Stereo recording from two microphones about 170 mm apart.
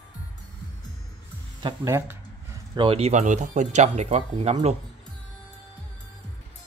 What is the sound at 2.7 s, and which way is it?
Speech, 30° right (ahead or behind).